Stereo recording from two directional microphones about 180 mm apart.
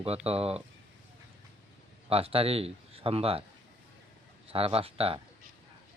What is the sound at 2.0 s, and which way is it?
Speech, 35° right (ahead or behind).